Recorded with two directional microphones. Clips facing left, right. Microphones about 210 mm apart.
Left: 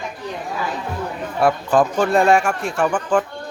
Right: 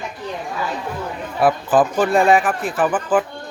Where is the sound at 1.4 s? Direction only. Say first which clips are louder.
Right 1 dB; 5° right (ahead or behind).